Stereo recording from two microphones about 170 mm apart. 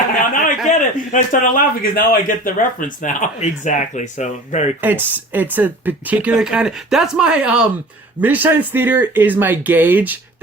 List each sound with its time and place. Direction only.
0.2 s a sound: 50° left (ahead or behind)
0.7 s a man's voice: 50° left (ahead or behind)
4.8 s speech: 10° right (ahead or behind)